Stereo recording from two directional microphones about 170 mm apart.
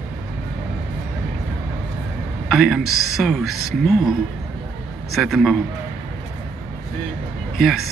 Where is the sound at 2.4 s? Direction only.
Centre (ahead or behind).